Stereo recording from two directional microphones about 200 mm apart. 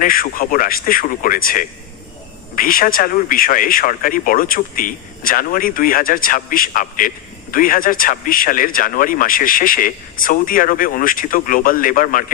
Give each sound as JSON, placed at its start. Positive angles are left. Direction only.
{"t": 0.0, "sound": "speech", "side_deg": 45}